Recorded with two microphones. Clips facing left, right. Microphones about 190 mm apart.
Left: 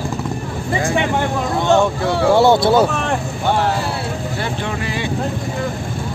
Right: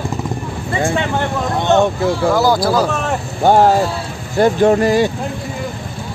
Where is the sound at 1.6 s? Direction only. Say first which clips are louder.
Right 1 dB; 20° right (ahead or behind).